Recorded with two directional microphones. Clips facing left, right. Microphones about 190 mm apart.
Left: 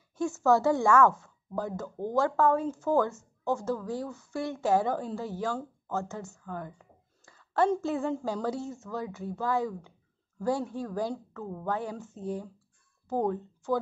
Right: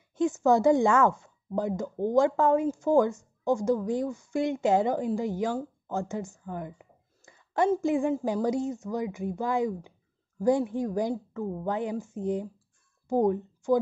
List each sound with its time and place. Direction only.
0.1 s a woman's voice: 20° right (ahead or behind)